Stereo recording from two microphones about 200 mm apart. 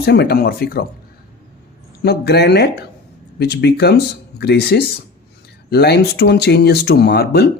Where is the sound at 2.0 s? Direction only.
55° left (ahead or behind).